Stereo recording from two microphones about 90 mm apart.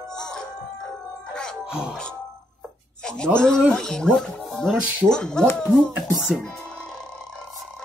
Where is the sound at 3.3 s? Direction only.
5° left (ahead or behind).